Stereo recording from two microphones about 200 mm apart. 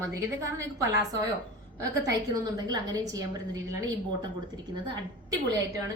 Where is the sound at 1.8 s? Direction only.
20° right (ahead or behind).